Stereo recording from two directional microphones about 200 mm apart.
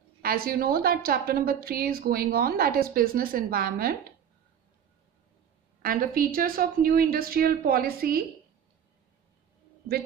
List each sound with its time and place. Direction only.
0.2 s a woman's voice: 45° right (ahead or behind)
5.8 s a woman's voice: 45° right (ahead or behind)